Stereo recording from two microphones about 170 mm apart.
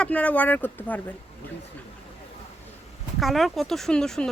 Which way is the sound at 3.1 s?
Centre (ahead or behind).